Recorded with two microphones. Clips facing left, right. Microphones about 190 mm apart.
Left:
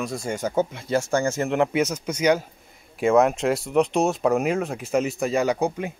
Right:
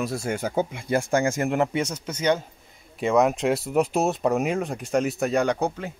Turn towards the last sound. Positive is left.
turn(degrees=15)  # may be behind; listen again after turning